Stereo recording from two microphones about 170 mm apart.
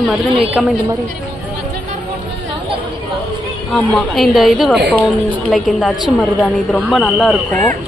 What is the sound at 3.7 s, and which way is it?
A woman's voice, centre (ahead or behind).